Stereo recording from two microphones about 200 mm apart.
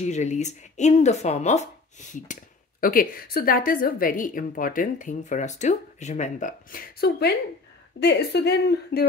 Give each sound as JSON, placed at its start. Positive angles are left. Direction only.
{"t": 0.0, "sound": "a woman's voice", "side_deg": 35}